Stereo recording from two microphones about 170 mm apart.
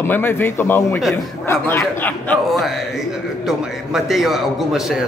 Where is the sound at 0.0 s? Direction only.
15° left (ahead or behind).